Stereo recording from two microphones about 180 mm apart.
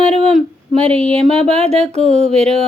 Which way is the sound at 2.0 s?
5° left (ahead or behind).